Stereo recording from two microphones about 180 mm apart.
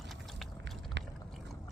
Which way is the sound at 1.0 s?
85° right.